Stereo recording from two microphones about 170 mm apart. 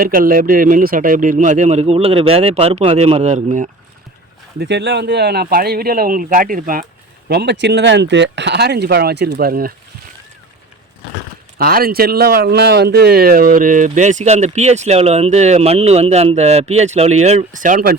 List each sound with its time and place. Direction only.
0.0 s speech: 55° right (ahead or behind)
4.6 s speech: 90° right; by 6.8 s 55° right (ahead or behind)
7.3 s speech: 75° right (ahead or behind); by 9.7 s 60° right (ahead or behind)
11.5 s speech: 60° right (ahead or behind)